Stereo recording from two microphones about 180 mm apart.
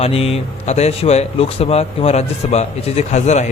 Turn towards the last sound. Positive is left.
turn(degrees=40)  # may be behind; listen again after turning